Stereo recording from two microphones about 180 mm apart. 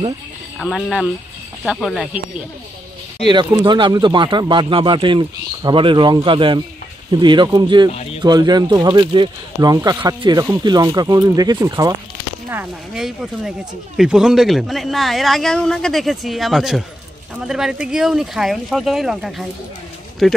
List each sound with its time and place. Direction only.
0.6 s a man's voice: centre (ahead or behind)
3.3 s speech: 25° right (ahead or behind)
7.9 s speech: 35° left (ahead or behind)
8.2 s speech: 25° right (ahead or behind)
12.4 s a man's voice: 5° right (ahead or behind)